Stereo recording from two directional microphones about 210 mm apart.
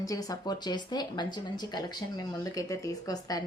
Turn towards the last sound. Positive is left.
turn(degrees=15)  # may be behind; listen again after turning